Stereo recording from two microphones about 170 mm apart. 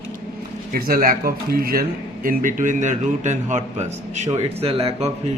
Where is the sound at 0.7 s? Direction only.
60° right (ahead or behind); by 5.1 s 35° right (ahead or behind).